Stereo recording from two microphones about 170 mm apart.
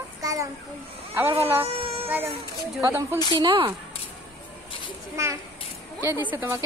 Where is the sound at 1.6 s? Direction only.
35° right (ahead or behind).